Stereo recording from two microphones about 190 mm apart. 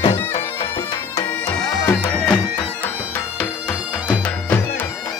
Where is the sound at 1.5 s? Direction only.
10° left (ahead or behind).